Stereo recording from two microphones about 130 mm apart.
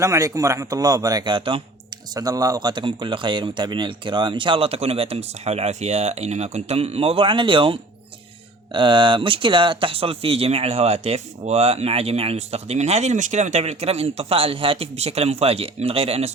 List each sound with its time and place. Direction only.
0.0 s a man's voice: 25° right (ahead or behind); by 2.0 s 40° right (ahead or behind)
2.1 s speech: 30° right (ahead or behind); by 16.3 s 50° right (ahead or behind)